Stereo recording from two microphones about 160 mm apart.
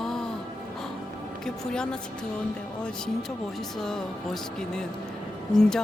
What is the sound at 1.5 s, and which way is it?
Music, 5° left (ahead or behind).